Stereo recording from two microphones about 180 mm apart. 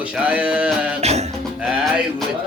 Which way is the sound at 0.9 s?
40° right (ahead or behind).